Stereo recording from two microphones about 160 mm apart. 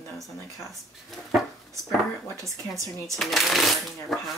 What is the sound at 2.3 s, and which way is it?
Speech, 20° right (ahead or behind).